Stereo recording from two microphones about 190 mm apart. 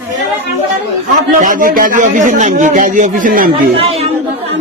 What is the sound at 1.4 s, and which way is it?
A man's voice, 45° right (ahead or behind).